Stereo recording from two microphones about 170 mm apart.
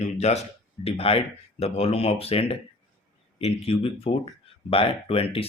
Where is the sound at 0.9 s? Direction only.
35° left (ahead or behind).